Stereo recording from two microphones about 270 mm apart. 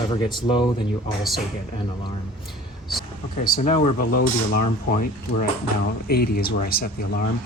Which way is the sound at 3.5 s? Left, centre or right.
Left.